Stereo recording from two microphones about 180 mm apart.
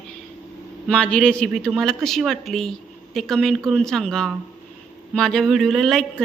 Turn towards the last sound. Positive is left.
turn(degrees=0)  # may be behind; listen again after turning